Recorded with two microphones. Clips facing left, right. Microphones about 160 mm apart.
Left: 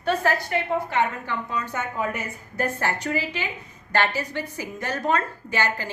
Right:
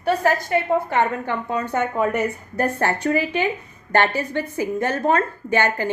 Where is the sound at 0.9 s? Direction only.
55° right (ahead or behind).